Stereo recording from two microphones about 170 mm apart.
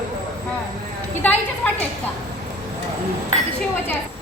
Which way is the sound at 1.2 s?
10° left (ahead or behind).